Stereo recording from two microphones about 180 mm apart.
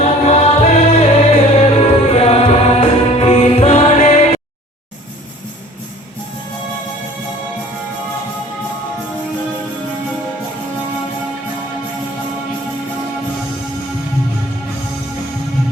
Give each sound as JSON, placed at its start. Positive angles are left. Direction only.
{"t": 0.0, "sound": "music", "side_deg": 40}